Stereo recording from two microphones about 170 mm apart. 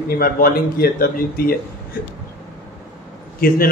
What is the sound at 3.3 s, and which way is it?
Speech, 60° left (ahead or behind).